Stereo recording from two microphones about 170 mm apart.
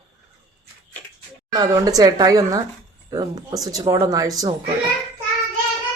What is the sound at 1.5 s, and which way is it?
A woman's voice, 20° right (ahead or behind).